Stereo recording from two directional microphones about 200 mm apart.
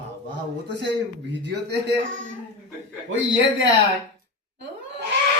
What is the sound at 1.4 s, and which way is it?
Speech, 55° right (ahead or behind).